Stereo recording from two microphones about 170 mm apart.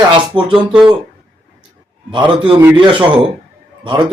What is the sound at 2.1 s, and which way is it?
Speech, 30° right (ahead or behind).